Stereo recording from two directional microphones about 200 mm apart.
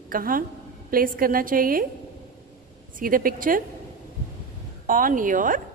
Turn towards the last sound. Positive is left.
turn(degrees=-40)  # may be behind; listen again after turning